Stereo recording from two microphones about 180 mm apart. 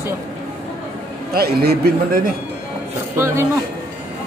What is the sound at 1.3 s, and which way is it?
Speech, 60° right (ahead or behind).